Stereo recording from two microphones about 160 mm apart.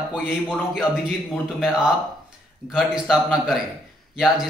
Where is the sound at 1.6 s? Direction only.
5° right (ahead or behind).